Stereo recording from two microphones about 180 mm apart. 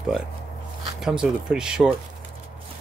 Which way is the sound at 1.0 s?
5° right (ahead or behind).